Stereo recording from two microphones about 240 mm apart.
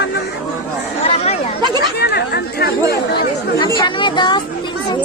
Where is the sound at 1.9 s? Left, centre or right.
Left.